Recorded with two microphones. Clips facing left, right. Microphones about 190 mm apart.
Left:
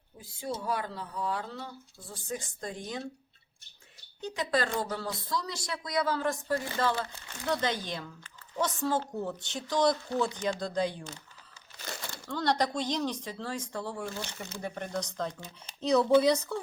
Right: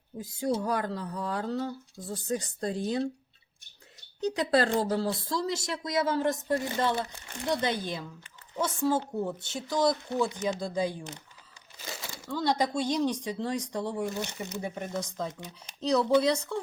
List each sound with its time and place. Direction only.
0.2 s speech: 45° right (ahead or behind)
4.4 s speech: 35° right (ahead or behind); by 16.6 s 5° left (ahead or behind)